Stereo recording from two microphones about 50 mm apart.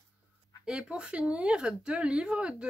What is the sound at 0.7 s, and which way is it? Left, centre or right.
Speech, centre.